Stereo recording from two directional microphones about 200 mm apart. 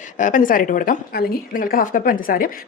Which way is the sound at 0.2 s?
40° left (ahead or behind).